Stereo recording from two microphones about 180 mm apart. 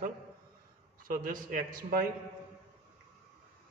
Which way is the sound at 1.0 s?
50° right (ahead or behind).